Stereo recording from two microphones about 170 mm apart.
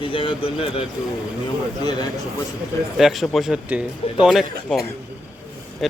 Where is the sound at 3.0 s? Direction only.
Centre (ahead or behind).